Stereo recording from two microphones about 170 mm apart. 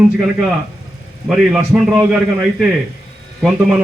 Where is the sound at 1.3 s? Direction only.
5° right (ahead or behind).